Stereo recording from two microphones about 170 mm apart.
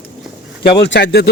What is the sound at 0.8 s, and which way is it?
Speech, 90° left.